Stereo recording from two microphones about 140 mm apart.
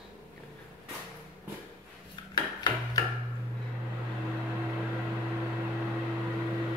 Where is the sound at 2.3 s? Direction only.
30° left (ahead or behind).